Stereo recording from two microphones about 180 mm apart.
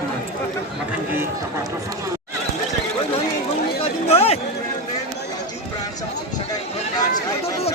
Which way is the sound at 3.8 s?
35° left (ahead or behind).